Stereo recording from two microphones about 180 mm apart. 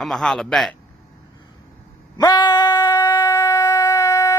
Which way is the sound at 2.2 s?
25° left (ahead or behind).